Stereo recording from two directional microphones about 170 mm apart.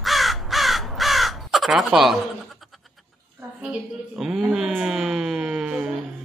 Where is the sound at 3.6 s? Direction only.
5° right (ahead or behind).